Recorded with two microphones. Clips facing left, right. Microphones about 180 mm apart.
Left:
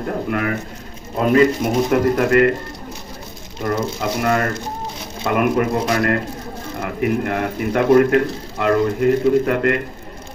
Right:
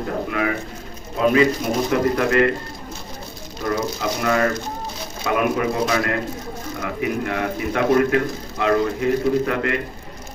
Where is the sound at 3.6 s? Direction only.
55° left (ahead or behind).